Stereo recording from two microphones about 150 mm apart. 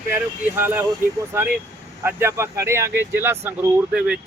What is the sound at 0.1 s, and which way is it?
Speech, 15° right (ahead or behind).